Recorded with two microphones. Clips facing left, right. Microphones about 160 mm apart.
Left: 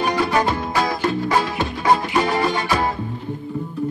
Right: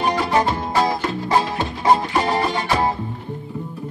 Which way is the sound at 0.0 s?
30° right (ahead or behind).